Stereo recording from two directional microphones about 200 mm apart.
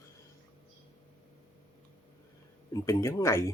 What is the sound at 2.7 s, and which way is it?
Speech, 15° left (ahead or behind).